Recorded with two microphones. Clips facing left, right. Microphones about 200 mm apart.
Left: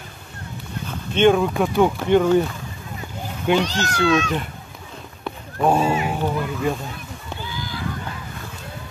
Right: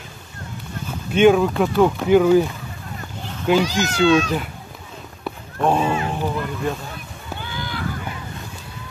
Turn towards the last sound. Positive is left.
turn(degrees=-60)  # may be behind; listen again after turning